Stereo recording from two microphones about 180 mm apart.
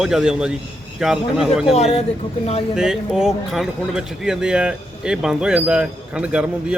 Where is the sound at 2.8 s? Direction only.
5° right (ahead or behind).